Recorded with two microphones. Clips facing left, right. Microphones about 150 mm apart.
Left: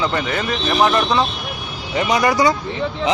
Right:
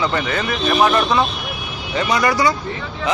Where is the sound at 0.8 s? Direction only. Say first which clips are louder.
Right 1 dB; 20° left (ahead or behind).